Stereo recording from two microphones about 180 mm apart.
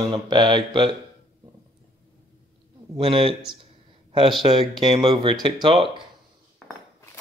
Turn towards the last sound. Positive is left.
turn(degrees=-30)  # may be behind; listen again after turning